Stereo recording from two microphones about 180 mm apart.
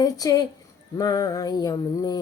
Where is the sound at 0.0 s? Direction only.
20° left (ahead or behind).